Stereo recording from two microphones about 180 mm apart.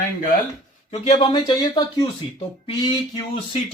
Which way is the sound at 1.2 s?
25° left (ahead or behind).